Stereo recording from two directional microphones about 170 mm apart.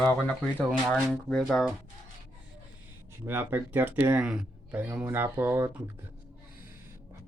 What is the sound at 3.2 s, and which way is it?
Speech, 10° right (ahead or behind).